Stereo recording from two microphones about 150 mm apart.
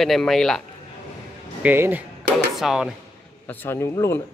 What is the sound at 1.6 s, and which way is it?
Speech, 10° right (ahead or behind).